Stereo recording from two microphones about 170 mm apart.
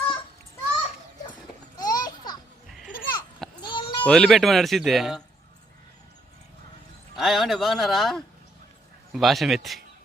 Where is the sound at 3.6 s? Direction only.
30° left (ahead or behind).